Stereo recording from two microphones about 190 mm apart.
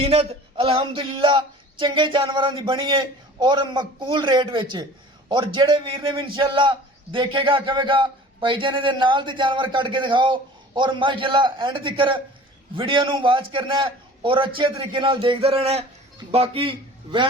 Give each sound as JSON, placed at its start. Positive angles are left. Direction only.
{"t": 0.0, "sound": "a man's voice", "side_deg": -30}